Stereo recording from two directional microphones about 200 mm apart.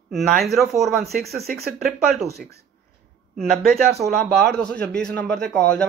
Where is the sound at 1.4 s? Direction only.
50° right (ahead or behind).